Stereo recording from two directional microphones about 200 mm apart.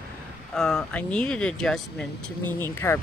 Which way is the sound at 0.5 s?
5° left (ahead or behind).